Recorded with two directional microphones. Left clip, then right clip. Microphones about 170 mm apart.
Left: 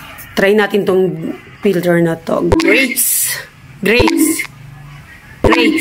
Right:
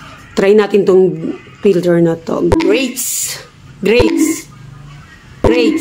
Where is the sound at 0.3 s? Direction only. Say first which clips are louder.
Right 2 dB; 20° right (ahead or behind).